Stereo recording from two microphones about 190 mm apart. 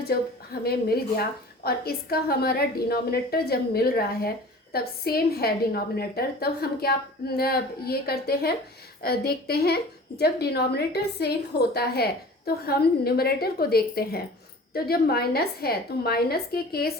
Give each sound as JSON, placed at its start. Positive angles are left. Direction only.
{"t": 0.1, "sound": "a woman's voice", "side_deg": 55}